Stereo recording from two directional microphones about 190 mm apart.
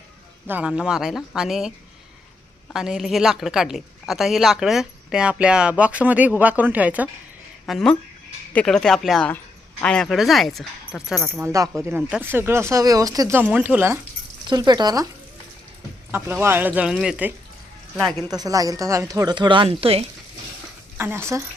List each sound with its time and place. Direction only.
0.4 s speech: 10° right (ahead or behind)
2.7 s speech: centre (ahead or behind)
7.7 s speech: 5° left (ahead or behind)
11.4 s speech: 15° right (ahead or behind)
14.4 s speech: 20° right (ahead or behind)
16.1 s speech: 10° right (ahead or behind)
18.3 s speech: 20° right (ahead or behind)
21.0 s speech: 10° right (ahead or behind)